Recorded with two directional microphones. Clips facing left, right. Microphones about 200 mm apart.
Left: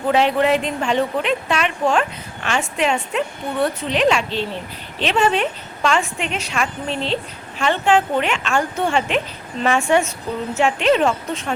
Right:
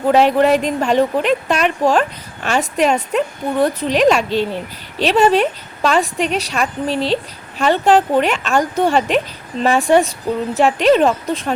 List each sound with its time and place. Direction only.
0.1 s a woman's voice: 40° right (ahead or behind)